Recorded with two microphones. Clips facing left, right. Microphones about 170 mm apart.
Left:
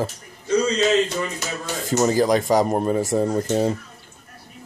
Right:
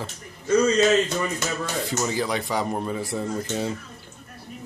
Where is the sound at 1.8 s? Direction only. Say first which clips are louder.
Left 10 dB; 45° left (ahead or behind).